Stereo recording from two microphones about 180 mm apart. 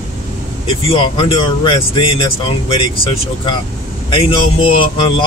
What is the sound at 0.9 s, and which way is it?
Speech, 30° left (ahead or behind).